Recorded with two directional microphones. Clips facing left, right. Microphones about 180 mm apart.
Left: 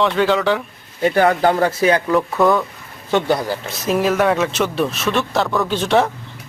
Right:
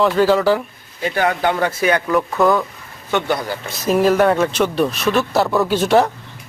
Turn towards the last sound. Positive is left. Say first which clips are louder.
# right 2 dB
turn(degrees=0)  # may be behind; listen again after turning